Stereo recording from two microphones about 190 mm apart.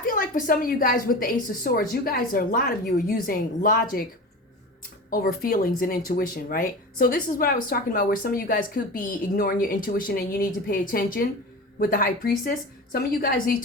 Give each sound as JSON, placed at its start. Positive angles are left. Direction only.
{"t": 0.0, "sound": "speech", "side_deg": 45}
{"t": 5.1, "sound": "speech", "side_deg": 50}